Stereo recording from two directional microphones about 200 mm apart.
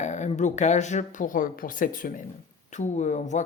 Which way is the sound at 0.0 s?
35° left (ahead or behind).